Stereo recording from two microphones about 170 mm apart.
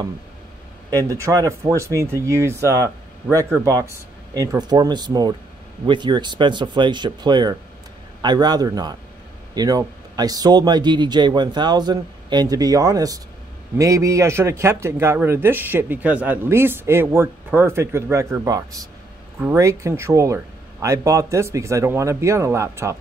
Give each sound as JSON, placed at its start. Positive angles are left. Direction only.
{"t": 0.8, "sound": "a man's voice", "side_deg": -20}